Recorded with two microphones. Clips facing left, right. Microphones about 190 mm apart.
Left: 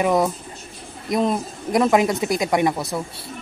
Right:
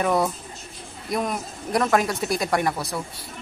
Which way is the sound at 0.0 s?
15° left (ahead or behind).